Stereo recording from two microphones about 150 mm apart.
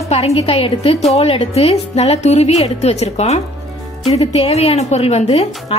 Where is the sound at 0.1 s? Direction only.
45° left (ahead or behind).